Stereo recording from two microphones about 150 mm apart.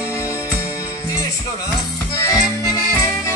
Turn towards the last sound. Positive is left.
turn(degrees=20)  # may be behind; listen again after turning